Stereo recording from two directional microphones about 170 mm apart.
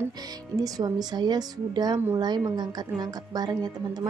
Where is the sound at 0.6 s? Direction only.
20° right (ahead or behind).